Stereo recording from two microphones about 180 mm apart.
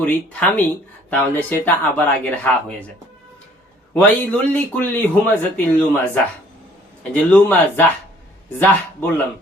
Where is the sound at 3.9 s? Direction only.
10° left (ahead or behind).